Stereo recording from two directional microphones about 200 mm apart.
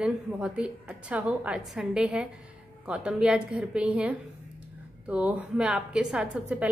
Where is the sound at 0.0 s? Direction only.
5° right (ahead or behind).